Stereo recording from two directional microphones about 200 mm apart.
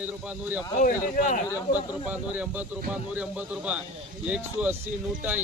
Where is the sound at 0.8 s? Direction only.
40° left (ahead or behind).